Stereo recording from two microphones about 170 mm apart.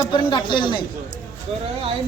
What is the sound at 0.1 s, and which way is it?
Speech, 30° left (ahead or behind).